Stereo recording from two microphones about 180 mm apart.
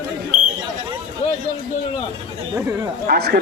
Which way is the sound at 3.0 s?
55° right (ahead or behind).